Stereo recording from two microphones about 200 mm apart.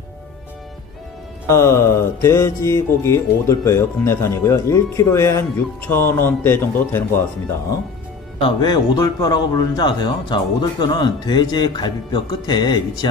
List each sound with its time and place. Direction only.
1.5 s mantra: 15° left (ahead or behind)
8.4 s speech: 25° left (ahead or behind)